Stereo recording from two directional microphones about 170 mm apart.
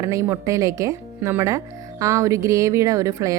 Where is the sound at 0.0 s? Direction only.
20° right (ahead or behind).